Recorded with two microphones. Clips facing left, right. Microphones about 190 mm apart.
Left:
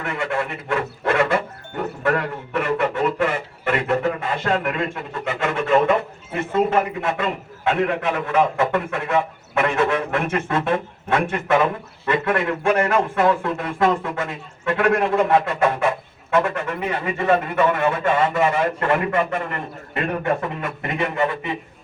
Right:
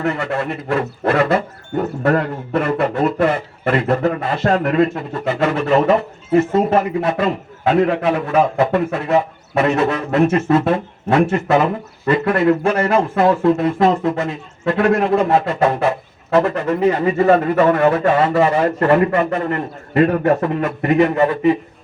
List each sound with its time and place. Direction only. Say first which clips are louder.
0.0 s speech: right 4 dB; 40° right (ahead or behind)